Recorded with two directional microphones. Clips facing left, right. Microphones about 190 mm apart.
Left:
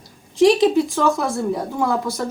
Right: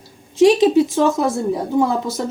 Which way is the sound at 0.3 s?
20° right (ahead or behind).